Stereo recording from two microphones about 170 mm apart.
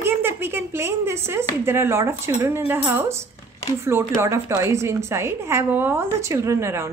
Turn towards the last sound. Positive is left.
turn(degrees=-15)  # may be behind; listen again after turning